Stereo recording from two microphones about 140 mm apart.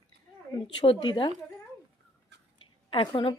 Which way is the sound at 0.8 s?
40° left (ahead or behind).